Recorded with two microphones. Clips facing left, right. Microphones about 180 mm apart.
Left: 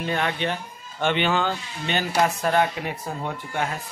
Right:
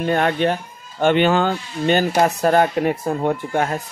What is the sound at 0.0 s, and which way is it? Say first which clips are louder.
Speech: right 7 dB; 50° right (ahead or behind).